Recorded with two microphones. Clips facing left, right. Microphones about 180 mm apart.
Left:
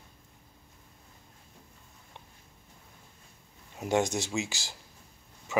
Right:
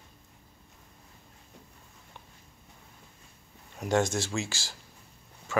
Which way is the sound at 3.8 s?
20° left (ahead or behind).